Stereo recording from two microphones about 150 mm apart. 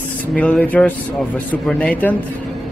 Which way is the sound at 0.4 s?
10° left (ahead or behind).